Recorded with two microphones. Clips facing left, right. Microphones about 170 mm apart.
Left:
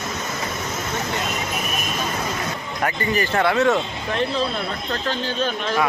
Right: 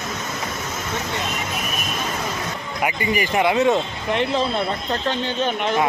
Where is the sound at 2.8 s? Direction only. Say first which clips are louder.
Even; 10° right (ahead or behind).